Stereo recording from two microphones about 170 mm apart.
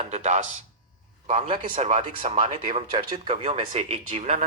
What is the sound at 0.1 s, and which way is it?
Speech, 45° right (ahead or behind).